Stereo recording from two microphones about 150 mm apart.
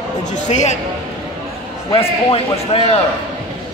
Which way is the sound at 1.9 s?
40° left (ahead or behind).